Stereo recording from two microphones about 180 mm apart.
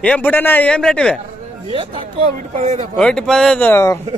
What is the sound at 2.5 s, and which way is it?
Speech, 45° right (ahead or behind).